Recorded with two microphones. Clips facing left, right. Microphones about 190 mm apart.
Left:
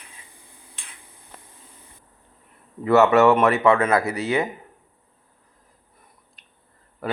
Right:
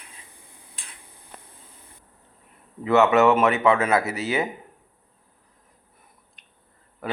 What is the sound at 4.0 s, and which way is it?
Speech, 25° right (ahead or behind).